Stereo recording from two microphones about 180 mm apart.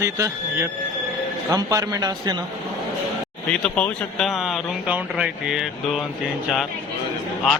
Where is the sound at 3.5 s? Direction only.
5° left (ahead or behind).